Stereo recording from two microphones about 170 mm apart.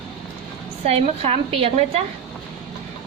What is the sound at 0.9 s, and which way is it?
Speech, 35° right (ahead or behind).